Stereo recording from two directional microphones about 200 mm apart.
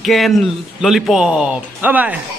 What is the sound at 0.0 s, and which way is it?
A man's voice, centre (ahead or behind).